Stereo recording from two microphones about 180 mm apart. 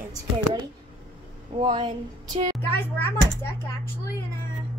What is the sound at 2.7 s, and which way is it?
Speech, 10° left (ahead or behind).